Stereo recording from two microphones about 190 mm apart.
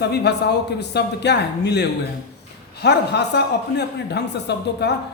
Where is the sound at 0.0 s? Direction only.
60° left (ahead or behind).